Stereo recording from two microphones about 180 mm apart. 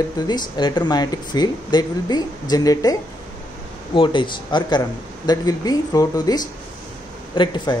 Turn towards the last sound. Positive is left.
turn(degrees=25)  # may be behind; listen again after turning